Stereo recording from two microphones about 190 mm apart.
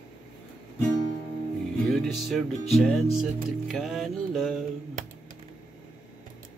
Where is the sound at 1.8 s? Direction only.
Centre (ahead or behind).